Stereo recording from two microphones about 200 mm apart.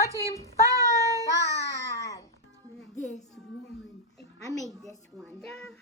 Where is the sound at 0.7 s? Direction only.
15° right (ahead or behind).